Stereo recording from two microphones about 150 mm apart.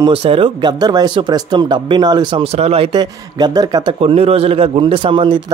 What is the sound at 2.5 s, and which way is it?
Speech, 40° right (ahead or behind).